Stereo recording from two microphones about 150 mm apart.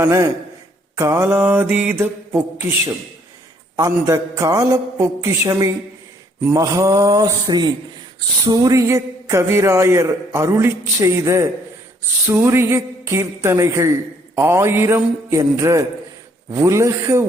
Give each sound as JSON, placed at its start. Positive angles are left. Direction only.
{"t": 0.0, "sound": "a man's voice", "side_deg": -20}
{"t": 3.8, "sound": "a man's voice", "side_deg": -25}